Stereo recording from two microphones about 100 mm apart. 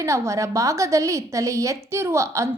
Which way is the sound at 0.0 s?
30° right (ahead or behind).